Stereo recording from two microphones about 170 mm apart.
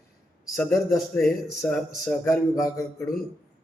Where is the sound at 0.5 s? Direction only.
15° left (ahead or behind).